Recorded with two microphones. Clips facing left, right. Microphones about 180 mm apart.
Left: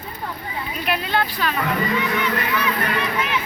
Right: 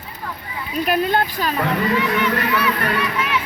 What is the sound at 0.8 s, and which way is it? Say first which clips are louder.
Speech: right 5 dB; 45° right (ahead or behind).